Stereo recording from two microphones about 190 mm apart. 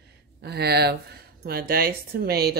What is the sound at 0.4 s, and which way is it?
Speech, 55° right (ahead or behind).